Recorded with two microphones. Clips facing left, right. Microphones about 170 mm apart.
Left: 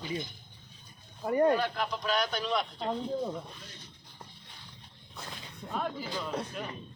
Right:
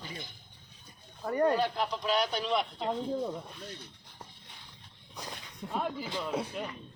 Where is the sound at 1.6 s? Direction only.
25° right (ahead or behind).